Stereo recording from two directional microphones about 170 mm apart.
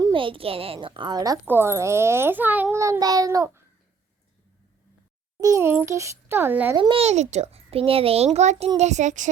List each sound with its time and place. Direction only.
0.0 s a child's voice: 30° right (ahead or behind)
5.4 s a child's voice: 20° right (ahead or behind)
6.7 s speech: 30° right (ahead or behind); by 9.3 s 45° right (ahead or behind)